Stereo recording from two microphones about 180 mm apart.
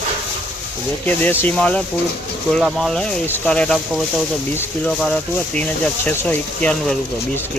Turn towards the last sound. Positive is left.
turn(degrees=5)  # may be behind; listen again after turning